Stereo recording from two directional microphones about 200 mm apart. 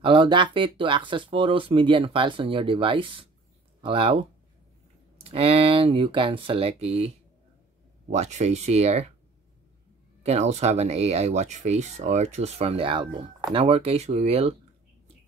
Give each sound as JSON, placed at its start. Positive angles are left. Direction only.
{"t": 0.0, "sound": "speech", "side_deg": -25}
{"t": 8.1, "sound": "speech", "side_deg": -35}
{"t": 10.2, "sound": "speech", "side_deg": -35}